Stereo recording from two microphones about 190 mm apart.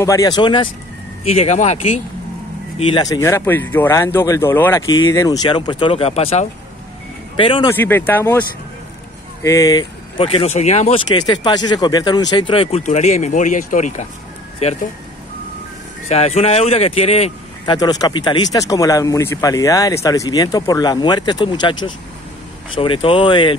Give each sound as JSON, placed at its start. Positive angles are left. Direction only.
{"t": 0.0, "sound": "speech", "side_deg": 15}
{"t": 2.9, "sound": "speech", "side_deg": 20}
{"t": 7.7, "sound": "speech", "side_deg": 10}
{"t": 11.1, "sound": "speech", "side_deg": 20}
{"t": 16.1, "sound": "speech", "side_deg": 35}
{"t": 17.7, "sound": "speech", "side_deg": 20}
{"t": 22.8, "sound": "speech", "side_deg": 30}